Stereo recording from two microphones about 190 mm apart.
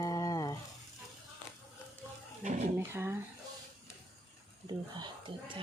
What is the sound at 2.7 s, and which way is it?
Speech, 10° right (ahead or behind).